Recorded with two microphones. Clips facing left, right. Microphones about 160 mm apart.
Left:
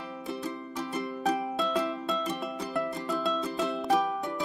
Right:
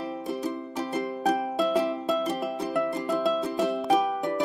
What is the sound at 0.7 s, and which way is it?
Music, 45° right (ahead or behind).